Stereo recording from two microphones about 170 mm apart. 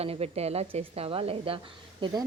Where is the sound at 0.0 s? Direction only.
35° right (ahead or behind).